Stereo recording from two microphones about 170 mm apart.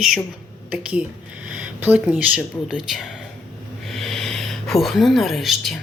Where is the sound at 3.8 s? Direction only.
Centre (ahead or behind).